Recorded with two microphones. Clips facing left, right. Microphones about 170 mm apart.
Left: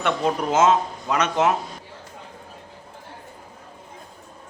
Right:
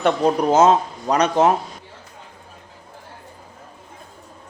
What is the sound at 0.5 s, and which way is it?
Speech, 35° right (ahead or behind).